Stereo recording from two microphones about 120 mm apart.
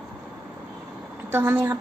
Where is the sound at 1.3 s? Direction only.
20° right (ahead or behind).